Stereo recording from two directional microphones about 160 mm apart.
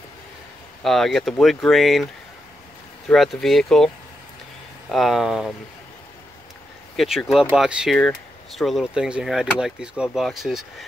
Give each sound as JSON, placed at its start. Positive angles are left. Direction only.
{"t": 0.8, "sound": "speech", "side_deg": 0}
{"t": 3.1, "sound": "speech", "side_deg": 0}
{"t": 4.9, "sound": "speech", "side_deg": 0}
{"t": 7.0, "sound": "speech", "side_deg": 0}